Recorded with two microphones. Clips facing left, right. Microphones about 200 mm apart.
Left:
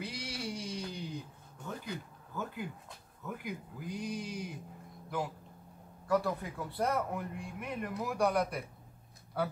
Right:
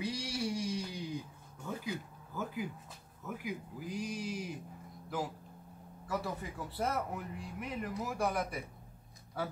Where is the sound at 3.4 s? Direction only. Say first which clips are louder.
Right 1 dB; 5° right (ahead or behind).